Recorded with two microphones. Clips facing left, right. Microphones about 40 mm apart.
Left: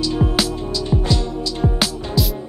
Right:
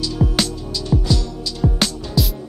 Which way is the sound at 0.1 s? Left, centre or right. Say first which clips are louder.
Left 1 dB; left.